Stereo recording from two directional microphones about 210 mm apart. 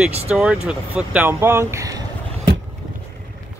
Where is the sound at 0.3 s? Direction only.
5° right (ahead or behind).